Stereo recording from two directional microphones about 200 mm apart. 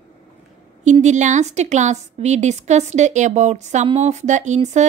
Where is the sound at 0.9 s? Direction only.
35° right (ahead or behind).